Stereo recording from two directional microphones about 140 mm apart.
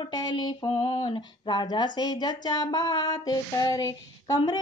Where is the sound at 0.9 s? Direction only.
30° left (ahead or behind).